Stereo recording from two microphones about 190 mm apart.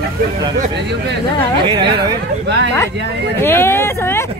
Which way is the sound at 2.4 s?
65° right (ahead or behind).